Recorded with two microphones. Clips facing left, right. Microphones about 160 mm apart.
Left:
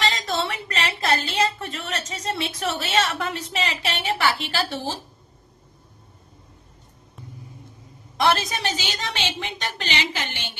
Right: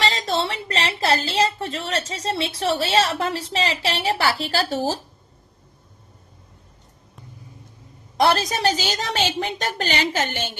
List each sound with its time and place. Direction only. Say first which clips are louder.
0.0 s a woman's voice: right 2 dB; 30° right (ahead or behind)
8.2 s a woman's voice: right 3 dB; 40° right (ahead or behind)